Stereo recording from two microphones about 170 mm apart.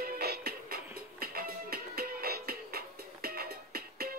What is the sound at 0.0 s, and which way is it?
Music, 70° right (ahead or behind).